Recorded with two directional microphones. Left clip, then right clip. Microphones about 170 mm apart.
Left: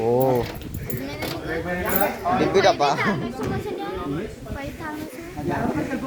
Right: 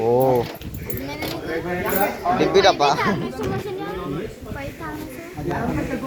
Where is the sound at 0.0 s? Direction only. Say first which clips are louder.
Right 2 dB; 5° left (ahead or behind).